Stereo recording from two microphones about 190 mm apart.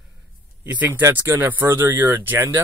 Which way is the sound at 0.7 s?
10° right (ahead or behind).